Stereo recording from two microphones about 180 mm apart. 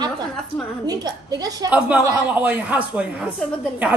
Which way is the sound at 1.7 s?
10° right (ahead or behind).